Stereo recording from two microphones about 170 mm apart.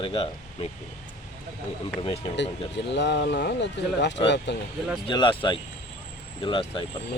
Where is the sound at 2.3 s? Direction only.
90° left.